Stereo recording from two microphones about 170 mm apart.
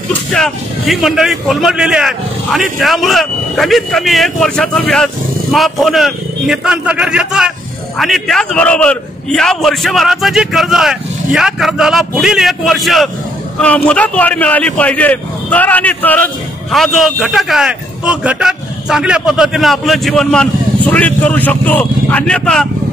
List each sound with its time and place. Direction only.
0.3 s a man's voice: centre (ahead or behind)